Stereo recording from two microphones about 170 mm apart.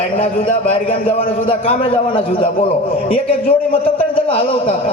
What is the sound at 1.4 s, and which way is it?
A man's voice, 35° left (ahead or behind).